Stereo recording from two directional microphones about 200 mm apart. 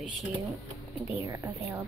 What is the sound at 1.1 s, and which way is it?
Speech, 15° right (ahead or behind).